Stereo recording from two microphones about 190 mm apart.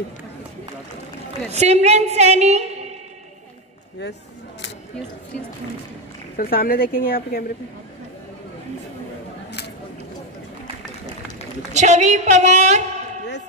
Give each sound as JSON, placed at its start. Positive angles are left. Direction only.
{"t": 1.5, "sound": "a woman's voice", "side_deg": -35}
{"t": 6.3, "sound": "speech", "side_deg": 50}
{"t": 11.7, "sound": "a woman's voice", "side_deg": -35}